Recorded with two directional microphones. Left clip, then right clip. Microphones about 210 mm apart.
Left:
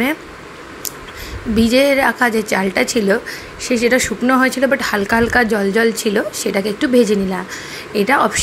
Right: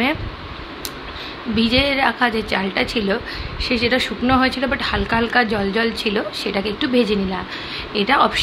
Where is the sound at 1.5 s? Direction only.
20° left (ahead or behind).